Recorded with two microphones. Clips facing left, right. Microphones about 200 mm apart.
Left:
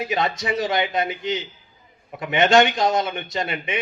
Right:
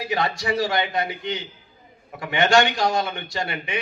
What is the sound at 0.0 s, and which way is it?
A man's voice, 20° left (ahead or behind).